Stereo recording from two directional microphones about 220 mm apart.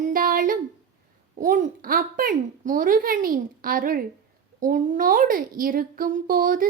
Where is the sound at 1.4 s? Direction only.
35° right (ahead or behind).